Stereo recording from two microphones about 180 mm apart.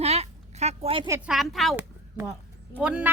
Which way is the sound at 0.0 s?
35° right (ahead or behind).